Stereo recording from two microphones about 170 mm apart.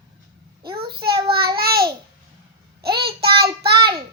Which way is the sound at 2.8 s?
70° right (ahead or behind).